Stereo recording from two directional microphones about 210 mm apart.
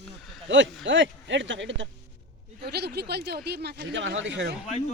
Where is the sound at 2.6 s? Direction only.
50° right (ahead or behind).